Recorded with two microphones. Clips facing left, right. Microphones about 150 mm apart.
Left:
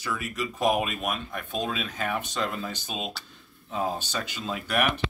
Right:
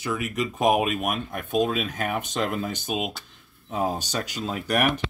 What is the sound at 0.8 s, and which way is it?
Speech, 50° right (ahead or behind).